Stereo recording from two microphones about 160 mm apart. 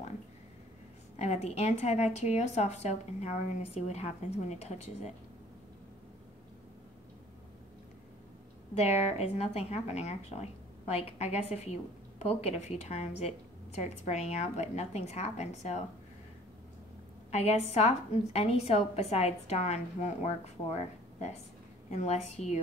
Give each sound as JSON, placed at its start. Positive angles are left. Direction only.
{"t": 1.1, "sound": "a woman's voice", "side_deg": 45}
{"t": 8.7, "sound": "a woman's voice", "side_deg": 40}
{"t": 17.3, "sound": "a woman's voice", "side_deg": 45}